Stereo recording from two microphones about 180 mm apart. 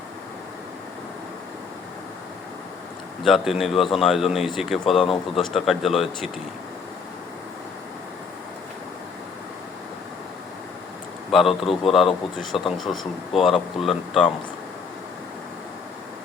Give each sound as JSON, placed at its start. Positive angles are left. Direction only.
{"t": 3.2, "sound": "a man's voice", "side_deg": 0}
{"t": 11.3, "sound": "a man's voice", "side_deg": 0}